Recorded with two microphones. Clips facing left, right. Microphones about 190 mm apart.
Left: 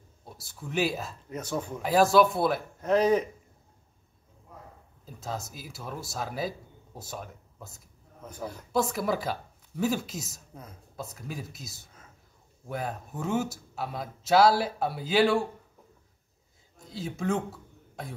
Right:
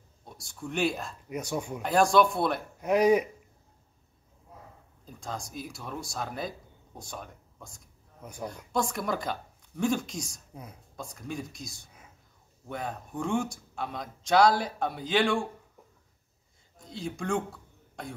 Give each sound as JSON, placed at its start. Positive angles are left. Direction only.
{"t": 0.2, "sound": "speech", "side_deg": 5}
{"t": 1.3, "sound": "speech", "side_deg": -15}
{"t": 1.8, "sound": "speech", "side_deg": 5}
{"t": 2.8, "sound": "speech", "side_deg": -15}
{"t": 5.0, "sound": "speech", "side_deg": 5}
{"t": 16.7, "sound": "a sound", "side_deg": 0}